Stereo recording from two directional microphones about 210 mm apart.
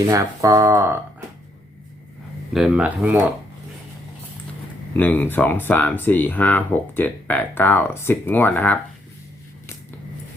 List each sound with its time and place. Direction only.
0.1 s speech: 15° right (ahead or behind)
2.5 s speech: 5° right (ahead or behind)
4.9 s speech: 10° left (ahead or behind)